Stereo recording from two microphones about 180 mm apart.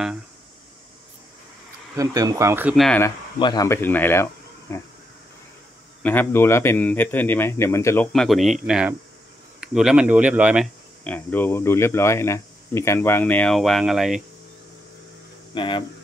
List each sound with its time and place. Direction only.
2.0 s speech: 20° right (ahead or behind)
2.7 s speech: centre (ahead or behind)
3.3 s speech: 25° left (ahead or behind)
6.0 s speech: 10° left (ahead or behind)
8.1 s speech: centre (ahead or behind)
11.1 s speech: 10° left (ahead or behind)
15.5 s speech: 25° left (ahead or behind)